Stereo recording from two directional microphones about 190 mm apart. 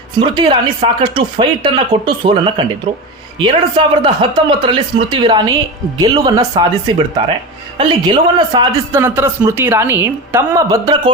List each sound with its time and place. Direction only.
0.2 s a man's voice: 25° right (ahead or behind)